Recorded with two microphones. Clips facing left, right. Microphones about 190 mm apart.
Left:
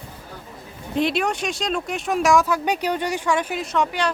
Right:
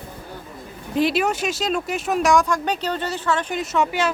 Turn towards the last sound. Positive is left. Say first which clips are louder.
# right 1 dB
turn(degrees=-5)  # may be behind; listen again after turning